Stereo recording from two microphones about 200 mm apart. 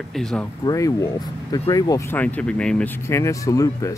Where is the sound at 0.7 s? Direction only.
15° left (ahead or behind).